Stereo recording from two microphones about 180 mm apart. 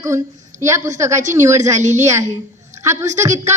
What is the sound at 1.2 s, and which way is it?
Speech, 40° right (ahead or behind).